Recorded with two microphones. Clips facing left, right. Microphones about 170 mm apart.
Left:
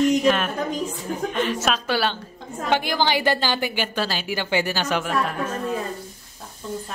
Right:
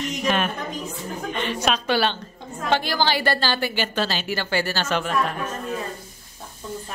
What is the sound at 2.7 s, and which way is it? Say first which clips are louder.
A woman's voice: left 1 dB; 15° left (ahead or behind).